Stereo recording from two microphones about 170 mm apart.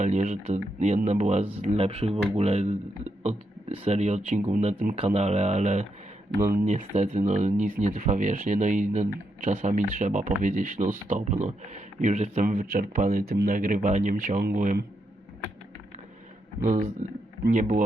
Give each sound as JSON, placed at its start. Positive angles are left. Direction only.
{"t": 0.0, "sound": "speech", "side_deg": -45}
{"t": 6.4, "sound": "speech", "side_deg": -55}
{"t": 12.7, "sound": "speech", "side_deg": -55}
{"t": 16.6, "sound": "speech", "side_deg": -45}